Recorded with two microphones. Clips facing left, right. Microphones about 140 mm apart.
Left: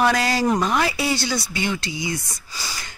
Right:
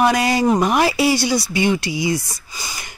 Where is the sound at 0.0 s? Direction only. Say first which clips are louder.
Right 3 dB; 15° right (ahead or behind).